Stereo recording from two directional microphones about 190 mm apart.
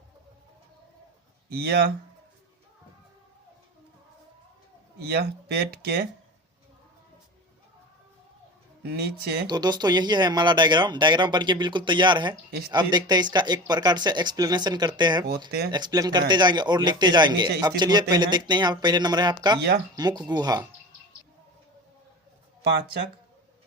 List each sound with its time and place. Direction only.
1.5 s speech: 55° right (ahead or behind)
4.9 s speech: 60° right (ahead or behind)
8.8 s speech: 60° right (ahead or behind)
9.5 s speech: 20° right (ahead or behind)